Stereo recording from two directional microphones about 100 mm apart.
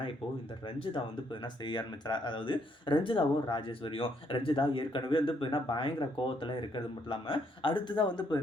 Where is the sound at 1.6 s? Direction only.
45° left (ahead or behind).